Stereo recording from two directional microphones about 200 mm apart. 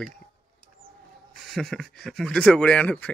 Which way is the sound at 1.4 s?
Centre (ahead or behind).